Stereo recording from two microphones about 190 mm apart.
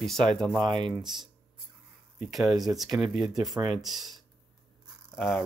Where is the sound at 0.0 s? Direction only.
5° left (ahead or behind).